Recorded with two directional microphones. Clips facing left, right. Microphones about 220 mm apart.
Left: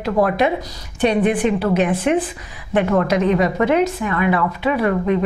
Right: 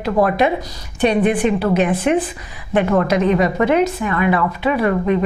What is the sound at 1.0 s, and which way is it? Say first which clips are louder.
A woman's voice: right 1 dB; 15° right (ahead or behind).